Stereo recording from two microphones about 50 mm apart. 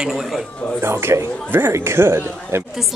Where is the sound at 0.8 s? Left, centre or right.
Right.